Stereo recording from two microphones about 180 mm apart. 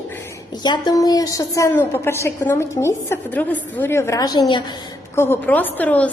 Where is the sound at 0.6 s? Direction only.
25° left (ahead or behind).